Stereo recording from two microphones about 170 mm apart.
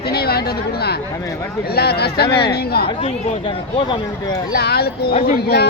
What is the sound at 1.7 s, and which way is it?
Speech, 70° left (ahead or behind).